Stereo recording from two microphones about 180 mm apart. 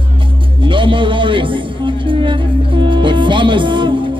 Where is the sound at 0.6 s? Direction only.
25° right (ahead or behind).